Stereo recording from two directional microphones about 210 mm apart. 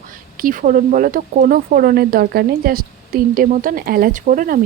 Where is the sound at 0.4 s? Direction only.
40° right (ahead or behind).